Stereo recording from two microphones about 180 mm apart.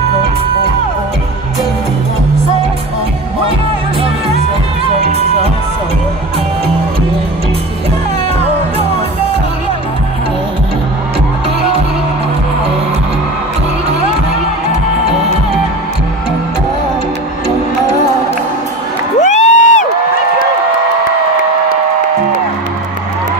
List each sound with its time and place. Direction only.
19.1 s crowd: 40° left (ahead or behind)